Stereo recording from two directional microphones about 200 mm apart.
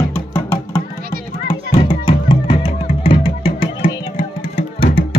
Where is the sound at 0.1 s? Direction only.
10° left (ahead or behind).